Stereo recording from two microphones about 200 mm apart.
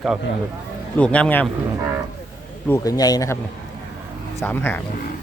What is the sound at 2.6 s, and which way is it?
Speech, 15° left (ahead or behind).